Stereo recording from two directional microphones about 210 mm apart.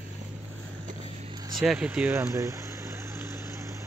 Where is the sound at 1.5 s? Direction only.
5° right (ahead or behind).